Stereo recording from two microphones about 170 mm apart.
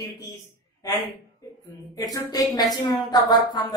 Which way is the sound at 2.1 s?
20° left (ahead or behind).